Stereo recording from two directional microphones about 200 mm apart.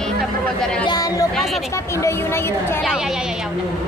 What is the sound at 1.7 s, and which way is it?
A woman's voice, 15° left (ahead or behind).